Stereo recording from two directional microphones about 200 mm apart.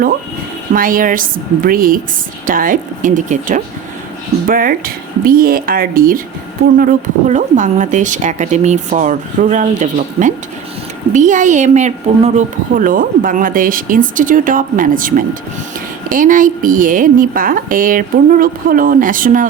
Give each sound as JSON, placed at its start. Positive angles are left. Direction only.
{"t": 0.7, "sound": "a woman's voice", "side_deg": -45}